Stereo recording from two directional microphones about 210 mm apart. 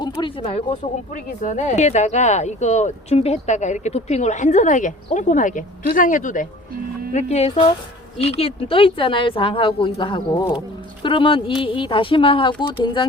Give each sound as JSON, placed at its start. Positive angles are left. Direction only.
{"t": 0.0, "sound": "a woman's voice", "side_deg": 25}